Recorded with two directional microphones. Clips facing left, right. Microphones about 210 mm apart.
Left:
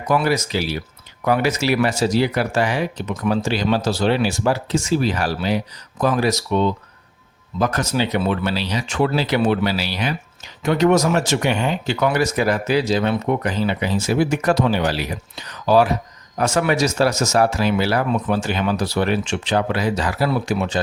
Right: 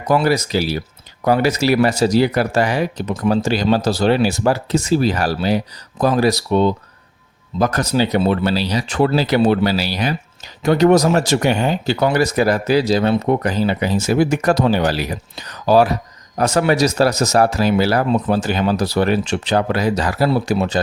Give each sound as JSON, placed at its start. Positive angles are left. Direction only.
{"t": 0.1, "sound": "speech", "side_deg": -35}